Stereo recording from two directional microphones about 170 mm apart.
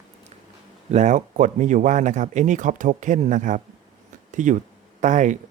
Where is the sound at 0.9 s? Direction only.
45° right (ahead or behind).